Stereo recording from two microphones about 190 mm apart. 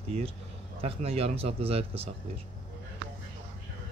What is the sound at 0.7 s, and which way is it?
Speech, 30° right (ahead or behind).